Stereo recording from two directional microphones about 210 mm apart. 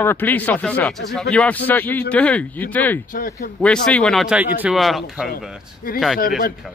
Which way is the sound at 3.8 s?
5° left (ahead or behind).